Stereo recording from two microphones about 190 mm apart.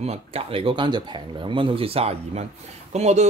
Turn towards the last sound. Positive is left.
turn(degrees=-35)  # may be behind; listen again after turning